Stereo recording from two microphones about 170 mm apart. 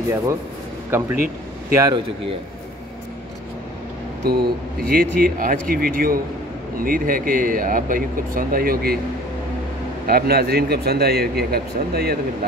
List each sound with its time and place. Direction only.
0.8 s a man's voice: 15° right (ahead or behind)
4.2 s speech: 70° right (ahead or behind)
10.0 s speech: 65° right (ahead or behind)